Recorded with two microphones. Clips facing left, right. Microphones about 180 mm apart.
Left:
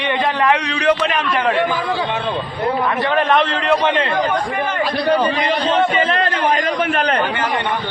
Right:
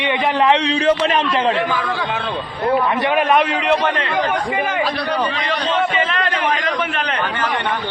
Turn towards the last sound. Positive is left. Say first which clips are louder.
# left 4 dB
turn(degrees=45)  # may be behind; listen again after turning